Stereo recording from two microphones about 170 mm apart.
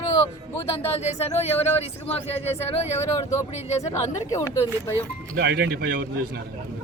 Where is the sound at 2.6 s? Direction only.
35° left (ahead or behind).